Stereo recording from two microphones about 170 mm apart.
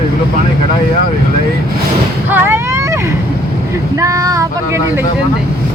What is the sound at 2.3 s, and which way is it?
Speech, 10° right (ahead or behind).